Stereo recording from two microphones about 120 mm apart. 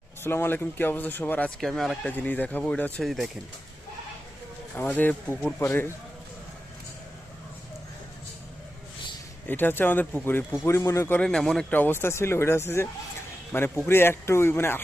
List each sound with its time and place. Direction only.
0.2 s speech: 20° left (ahead or behind)
1.6 s speech: centre (ahead or behind)
2.1 s speech: 15° left (ahead or behind)
3.0 s speech: centre (ahead or behind)
4.7 s speech: 15° left (ahead or behind)
9.5 s speech: 15° left (ahead or behind)
11.2 s speech: 5° left (ahead or behind)